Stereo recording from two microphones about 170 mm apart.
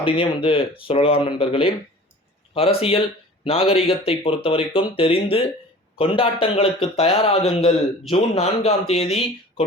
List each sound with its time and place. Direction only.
0.0 s a man's voice: 30° left (ahead or behind)